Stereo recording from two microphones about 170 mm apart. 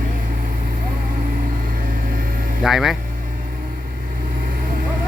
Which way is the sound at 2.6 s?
Centre (ahead or behind).